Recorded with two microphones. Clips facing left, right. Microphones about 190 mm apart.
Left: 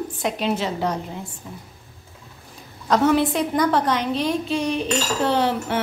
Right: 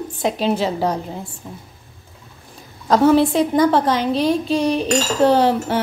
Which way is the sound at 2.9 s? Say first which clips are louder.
Right 4 dB; 35° right (ahead or behind).